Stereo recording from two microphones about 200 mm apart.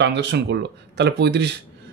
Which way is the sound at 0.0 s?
60° right (ahead or behind).